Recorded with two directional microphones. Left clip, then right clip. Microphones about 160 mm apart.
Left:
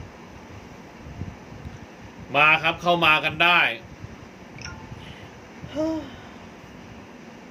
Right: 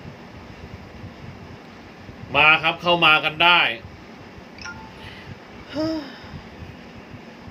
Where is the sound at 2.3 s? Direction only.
25° left (ahead or behind).